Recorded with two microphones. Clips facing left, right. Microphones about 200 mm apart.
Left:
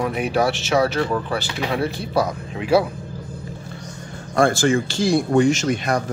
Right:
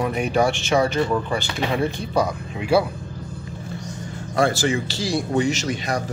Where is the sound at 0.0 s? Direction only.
5° left (ahead or behind).